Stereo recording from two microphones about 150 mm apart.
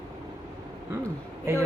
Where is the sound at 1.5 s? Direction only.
15° right (ahead or behind).